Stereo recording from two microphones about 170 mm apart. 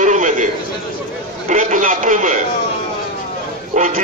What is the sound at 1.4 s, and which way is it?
Speech, 50° right (ahead or behind).